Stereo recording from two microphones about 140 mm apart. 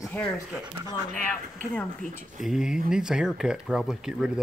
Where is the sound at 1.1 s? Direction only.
10° left (ahead or behind).